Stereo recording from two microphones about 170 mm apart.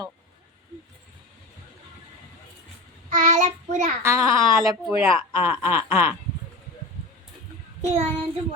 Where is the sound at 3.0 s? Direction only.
45° right (ahead or behind).